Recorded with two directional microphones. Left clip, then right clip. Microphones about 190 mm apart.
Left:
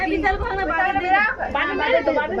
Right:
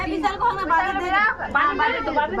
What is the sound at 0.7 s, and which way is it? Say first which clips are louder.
A woman's voice: left 1 dB; 15° right (ahead or behind).